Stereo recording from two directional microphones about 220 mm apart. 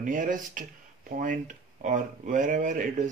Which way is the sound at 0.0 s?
35° right (ahead or behind).